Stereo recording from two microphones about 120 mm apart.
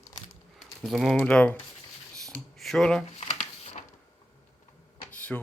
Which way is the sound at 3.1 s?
65° left (ahead or behind).